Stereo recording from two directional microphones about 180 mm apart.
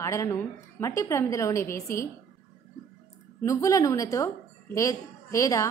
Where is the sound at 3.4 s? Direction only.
15° left (ahead or behind).